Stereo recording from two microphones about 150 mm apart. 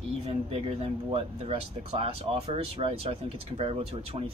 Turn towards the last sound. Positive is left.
turn(degrees=-40)  # may be behind; listen again after turning